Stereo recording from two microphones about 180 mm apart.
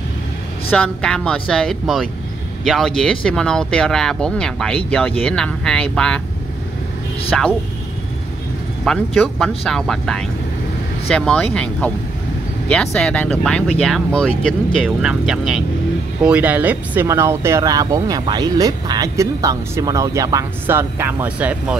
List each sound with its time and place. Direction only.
0.7 s speech: 5° left (ahead or behind)
7.3 s speech: centre (ahead or behind)
8.8 s speech: 5° left (ahead or behind)